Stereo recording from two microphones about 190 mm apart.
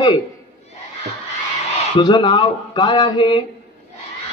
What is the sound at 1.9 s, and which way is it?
Speech, 25° left (ahead or behind).